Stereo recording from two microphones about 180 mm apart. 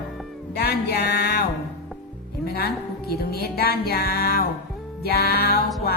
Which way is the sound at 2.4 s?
60° left (ahead or behind).